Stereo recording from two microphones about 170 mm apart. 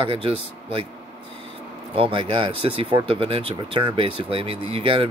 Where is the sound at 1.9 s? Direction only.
30° right (ahead or behind).